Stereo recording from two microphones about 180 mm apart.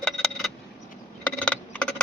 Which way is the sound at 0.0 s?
5° left (ahead or behind).